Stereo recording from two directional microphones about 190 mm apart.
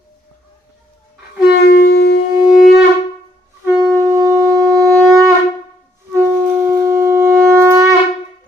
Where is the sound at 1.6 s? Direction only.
55° left (ahead or behind).